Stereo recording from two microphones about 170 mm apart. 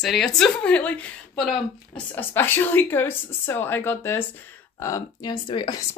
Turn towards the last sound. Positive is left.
turn(degrees=25)  # may be behind; listen again after turning